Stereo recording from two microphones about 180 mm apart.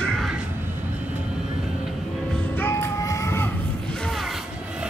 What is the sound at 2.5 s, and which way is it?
Music, 15° left (ahead or behind).